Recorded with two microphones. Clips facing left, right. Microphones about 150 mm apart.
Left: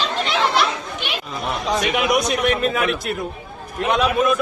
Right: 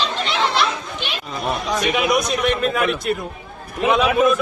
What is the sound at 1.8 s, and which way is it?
Speech, 10° left (ahead or behind).